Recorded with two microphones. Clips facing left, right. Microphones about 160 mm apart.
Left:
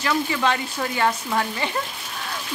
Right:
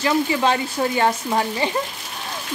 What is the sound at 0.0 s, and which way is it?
Speech, 25° right (ahead or behind).